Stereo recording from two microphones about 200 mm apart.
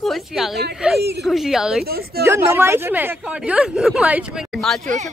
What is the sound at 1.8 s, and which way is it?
Music, 50° right (ahead or behind).